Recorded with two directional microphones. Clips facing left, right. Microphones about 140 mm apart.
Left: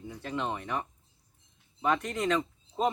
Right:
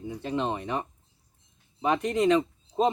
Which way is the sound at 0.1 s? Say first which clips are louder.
Right 4 dB; 25° right (ahead or behind).